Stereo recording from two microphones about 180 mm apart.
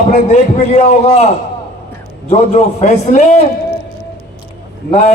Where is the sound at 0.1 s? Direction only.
40° left (ahead or behind).